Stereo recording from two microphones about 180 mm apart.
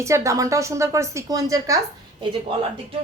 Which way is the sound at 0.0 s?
15° right (ahead or behind).